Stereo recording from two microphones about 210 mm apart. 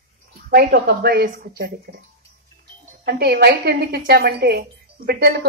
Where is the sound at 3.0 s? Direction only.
50° right (ahead or behind).